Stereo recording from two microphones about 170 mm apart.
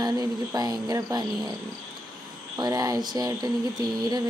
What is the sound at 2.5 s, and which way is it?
Speech, 20° right (ahead or behind).